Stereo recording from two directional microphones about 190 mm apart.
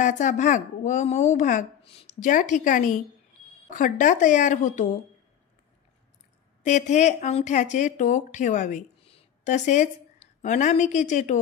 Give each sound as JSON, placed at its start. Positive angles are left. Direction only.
{"t": 0.0, "sound": "a woman's voice", "side_deg": 40}
{"t": 6.6, "sound": "a woman's voice", "side_deg": 40}